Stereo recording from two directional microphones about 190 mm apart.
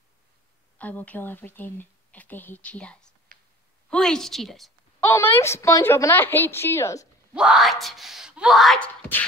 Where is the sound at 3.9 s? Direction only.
Centre (ahead or behind).